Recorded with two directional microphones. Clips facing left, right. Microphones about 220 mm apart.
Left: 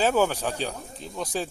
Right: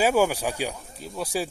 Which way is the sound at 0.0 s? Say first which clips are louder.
Right 1 dB; 10° right (ahead or behind).